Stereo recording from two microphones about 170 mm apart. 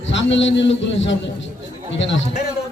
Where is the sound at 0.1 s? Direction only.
90° left.